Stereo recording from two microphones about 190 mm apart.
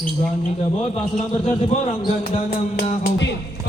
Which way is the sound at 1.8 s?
50° left (ahead or behind).